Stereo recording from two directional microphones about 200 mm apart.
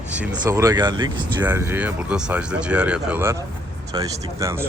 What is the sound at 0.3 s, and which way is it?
Speech, 15° right (ahead or behind).